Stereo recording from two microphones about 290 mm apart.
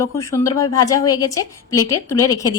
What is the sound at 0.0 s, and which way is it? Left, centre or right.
A woman's voice, centre.